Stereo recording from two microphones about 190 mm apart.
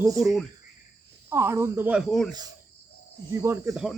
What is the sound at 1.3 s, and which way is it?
Speech, 15° right (ahead or behind).